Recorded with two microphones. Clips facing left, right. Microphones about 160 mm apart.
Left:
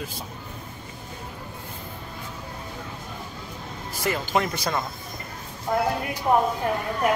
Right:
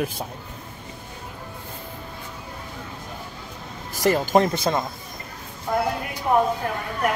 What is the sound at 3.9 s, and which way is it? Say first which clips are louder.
Speech: right 6 dB; 40° right (ahead or behind).